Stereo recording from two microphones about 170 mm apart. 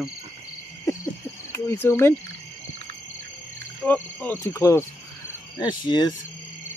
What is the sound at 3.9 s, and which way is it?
Speech, 10° left (ahead or behind).